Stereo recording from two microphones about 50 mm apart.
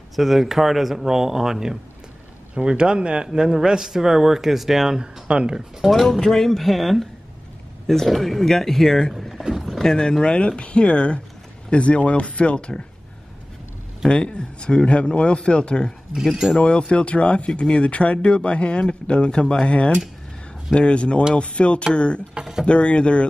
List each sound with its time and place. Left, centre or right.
0.1 s speech: centre
5.8 s speech: centre
9.4 s boat: centre
9.8 s speech: centre
14.0 s speech: left
22.3 s speech: centre
22.7 s speech: left